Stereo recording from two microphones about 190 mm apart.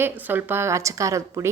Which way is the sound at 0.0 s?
10° right (ahead or behind).